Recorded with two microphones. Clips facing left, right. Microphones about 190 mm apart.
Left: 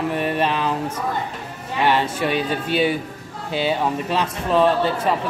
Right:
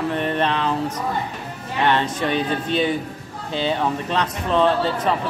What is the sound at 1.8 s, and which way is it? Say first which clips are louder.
Speech: left 1 dB; 10° left (ahead or behind).